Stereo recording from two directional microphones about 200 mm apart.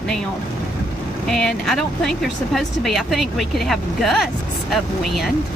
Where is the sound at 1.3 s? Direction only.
Centre (ahead or behind).